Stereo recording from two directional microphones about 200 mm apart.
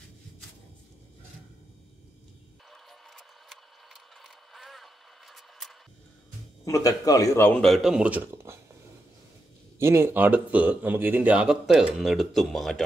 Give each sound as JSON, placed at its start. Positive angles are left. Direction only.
{"t": 2.7, "sound": "mechanisms", "side_deg": 0}
{"t": 6.6, "sound": "speech", "side_deg": 15}
{"t": 7.6, "sound": "speech", "side_deg": 0}
{"t": 9.8, "sound": "speech", "side_deg": -10}